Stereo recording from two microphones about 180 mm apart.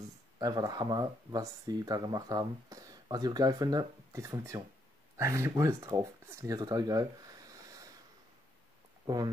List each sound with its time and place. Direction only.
0.4 s speech: 20° right (ahead or behind)
9.0 s speech: 20° right (ahead or behind)